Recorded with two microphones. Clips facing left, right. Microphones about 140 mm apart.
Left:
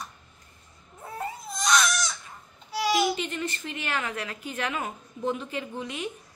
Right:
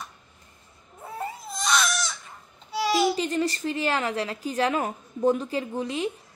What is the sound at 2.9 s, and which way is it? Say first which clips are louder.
A woman's voice: right 3 dB; 35° right (ahead or behind).